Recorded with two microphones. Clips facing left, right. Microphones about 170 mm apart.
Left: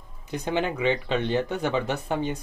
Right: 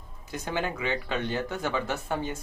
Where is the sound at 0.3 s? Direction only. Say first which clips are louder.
Left 4 dB; 20° left (ahead or behind).